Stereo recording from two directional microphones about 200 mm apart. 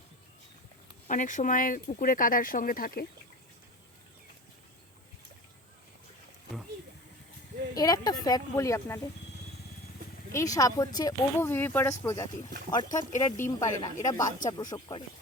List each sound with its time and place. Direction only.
1.0 s speech: 40° left (ahead or behind)
7.8 s speech: 20° left (ahead or behind)
10.3 s speech: 15° left (ahead or behind)